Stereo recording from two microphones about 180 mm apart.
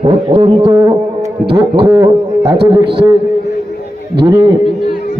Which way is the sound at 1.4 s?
65° right (ahead or behind).